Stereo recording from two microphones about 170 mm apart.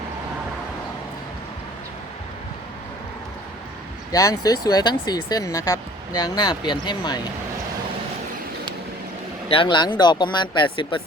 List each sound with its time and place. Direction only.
4.1 s speech: 20° left (ahead or behind)
9.5 s speech: 30° left (ahead or behind)